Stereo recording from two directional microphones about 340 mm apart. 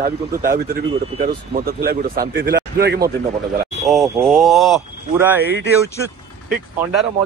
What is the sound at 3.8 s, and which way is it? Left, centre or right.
Speech, centre.